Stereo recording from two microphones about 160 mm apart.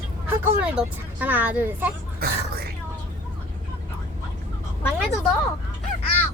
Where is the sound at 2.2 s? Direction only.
75° right (ahead or behind).